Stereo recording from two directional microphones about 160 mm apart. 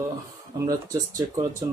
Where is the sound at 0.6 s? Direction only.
20° right (ahead or behind).